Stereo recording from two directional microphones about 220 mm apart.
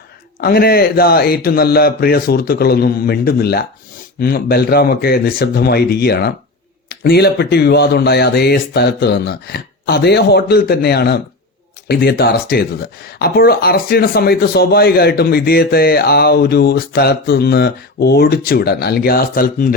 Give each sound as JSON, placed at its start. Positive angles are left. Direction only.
{"t": 0.4, "sound": "speech", "side_deg": 45}